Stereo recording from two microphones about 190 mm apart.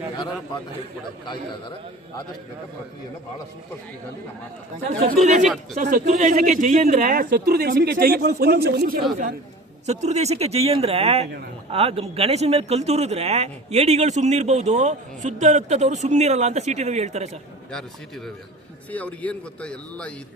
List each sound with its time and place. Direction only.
5.2 s speech: 40° right (ahead or behind)
9.8 s speech: 35° right (ahead or behind)
17.7 s a man's voice: 5° left (ahead or behind)